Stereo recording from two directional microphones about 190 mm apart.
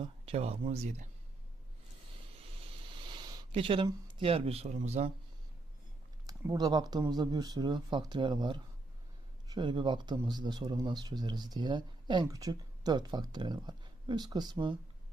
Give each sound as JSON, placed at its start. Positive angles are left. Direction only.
{"t": 0.0, "sound": "speech", "side_deg": -30}
{"t": 2.9, "sound": "a sound", "side_deg": -25}
{"t": 3.8, "sound": "speech", "side_deg": -25}
{"t": 6.2, "sound": "speech", "side_deg": -20}